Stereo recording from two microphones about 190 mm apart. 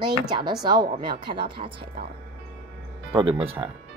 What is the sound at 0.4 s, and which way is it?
Speech, 20° right (ahead or behind).